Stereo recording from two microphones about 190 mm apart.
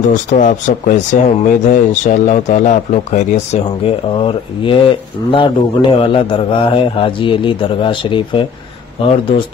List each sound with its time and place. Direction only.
0.1 s speech: 40° left (ahead or behind)